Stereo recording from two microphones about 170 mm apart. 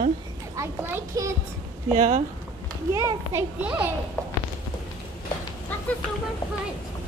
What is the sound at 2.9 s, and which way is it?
Speech, 15° right (ahead or behind).